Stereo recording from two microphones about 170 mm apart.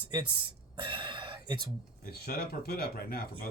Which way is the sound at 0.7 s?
30° right (ahead or behind).